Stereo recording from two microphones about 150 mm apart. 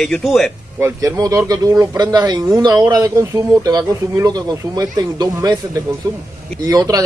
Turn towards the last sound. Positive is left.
turn(degrees=-25)  # may be behind; listen again after turning